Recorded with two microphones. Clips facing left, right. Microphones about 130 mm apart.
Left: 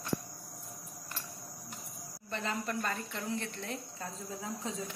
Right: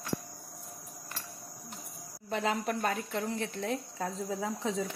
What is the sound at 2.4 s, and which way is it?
Speech, 85° right.